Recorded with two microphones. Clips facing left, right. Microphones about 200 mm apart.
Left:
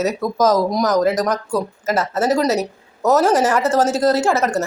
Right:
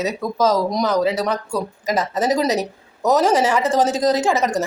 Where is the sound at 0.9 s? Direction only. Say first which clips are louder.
Left 2 dB; 10° right (ahead or behind).